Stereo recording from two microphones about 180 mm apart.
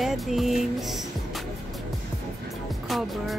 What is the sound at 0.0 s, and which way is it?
Music, centre (ahead or behind).